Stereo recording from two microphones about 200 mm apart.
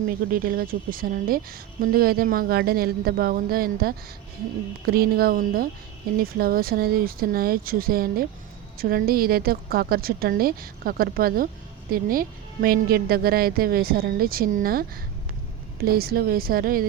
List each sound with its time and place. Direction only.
0.3 s a woman's voice: 45° right (ahead or behind)